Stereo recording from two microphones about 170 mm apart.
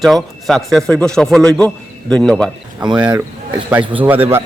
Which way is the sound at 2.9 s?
25° right (ahead or behind).